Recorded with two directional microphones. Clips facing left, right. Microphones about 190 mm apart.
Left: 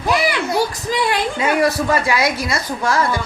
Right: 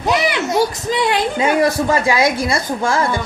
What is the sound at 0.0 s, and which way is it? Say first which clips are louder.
A child's voice: right 1 dB; 20° right (ahead or behind).